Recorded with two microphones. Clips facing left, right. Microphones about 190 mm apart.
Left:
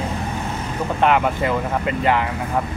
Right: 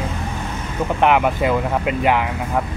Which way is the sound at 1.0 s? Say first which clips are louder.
Right 2 dB; 15° right (ahead or behind).